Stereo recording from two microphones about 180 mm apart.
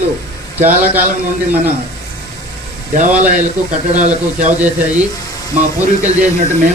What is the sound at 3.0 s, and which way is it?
Speech, 45° right (ahead or behind).